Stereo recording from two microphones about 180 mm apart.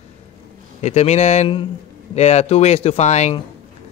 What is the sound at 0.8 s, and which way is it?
Speech, 40° left (ahead or behind).